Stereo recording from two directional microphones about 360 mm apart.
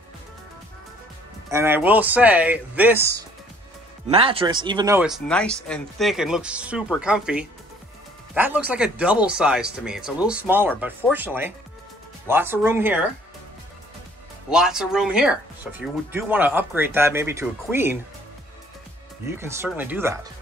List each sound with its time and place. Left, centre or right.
1.5 s speech: centre
14.5 s speech: centre
19.2 s speech: centre